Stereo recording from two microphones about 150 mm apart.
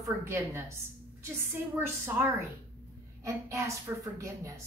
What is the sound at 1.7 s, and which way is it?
A woman's voice, 15° right (ahead or behind).